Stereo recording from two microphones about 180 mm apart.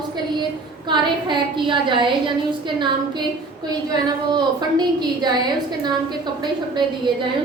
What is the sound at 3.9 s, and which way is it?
A woman's voice, 25° right (ahead or behind).